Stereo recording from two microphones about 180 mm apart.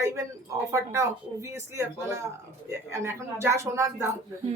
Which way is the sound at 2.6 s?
15° right (ahead or behind).